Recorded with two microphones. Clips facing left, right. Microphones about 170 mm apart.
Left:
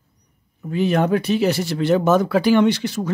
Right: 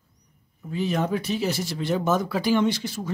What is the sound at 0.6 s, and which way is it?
Speech, 70° left (ahead or behind).